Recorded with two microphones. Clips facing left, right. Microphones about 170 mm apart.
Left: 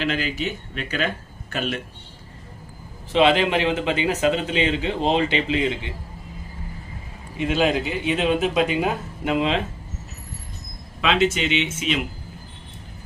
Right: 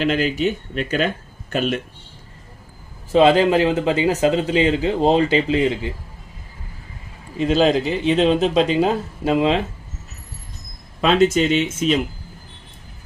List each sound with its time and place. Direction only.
0.0 s speech: 45° right (ahead or behind)
3.1 s speech: 40° right (ahead or behind)
7.3 s speech: 35° right (ahead or behind)
11.0 s speech: 40° right (ahead or behind)